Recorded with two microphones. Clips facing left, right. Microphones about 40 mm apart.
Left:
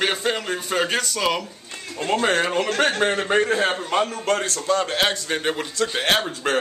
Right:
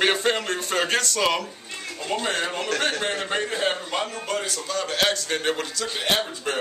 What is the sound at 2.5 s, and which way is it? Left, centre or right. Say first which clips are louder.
Speech: left 4 dB; left.